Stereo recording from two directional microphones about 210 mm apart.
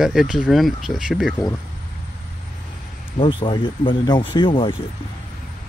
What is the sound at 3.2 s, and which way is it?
Speech, 25° left (ahead or behind).